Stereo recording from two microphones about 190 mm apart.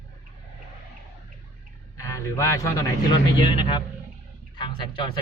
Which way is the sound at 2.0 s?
15° left (ahead or behind).